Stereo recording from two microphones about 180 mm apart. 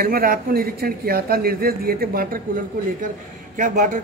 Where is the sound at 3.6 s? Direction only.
45° right (ahead or behind).